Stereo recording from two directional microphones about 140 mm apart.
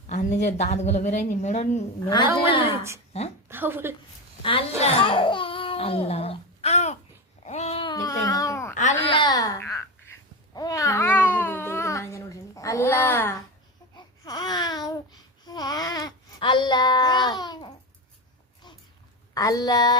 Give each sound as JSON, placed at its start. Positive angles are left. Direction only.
{"t": 0.1, "sound": "speech", "side_deg": 60}
{"t": 2.0, "sound": "a woman's voice", "side_deg": 30}
{"t": 3.5, "sound": "a woman's voice", "side_deg": -15}
{"t": 4.8, "sound": "speech", "side_deg": 40}
{"t": 7.4, "sound": "a sound", "side_deg": 50}
{"t": 7.9, "sound": "baby cry", "side_deg": 25}
{"t": 8.7, "sound": "a sound", "side_deg": 60}
{"t": 9.0, "sound": "babbling", "side_deg": 35}
{"t": 13.9, "sound": "babbling", "side_deg": 30}
{"t": 19.3, "sound": "speech", "side_deg": 25}